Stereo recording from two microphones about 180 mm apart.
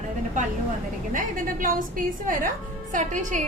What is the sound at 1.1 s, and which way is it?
A woman's voice, 50° right (ahead or behind).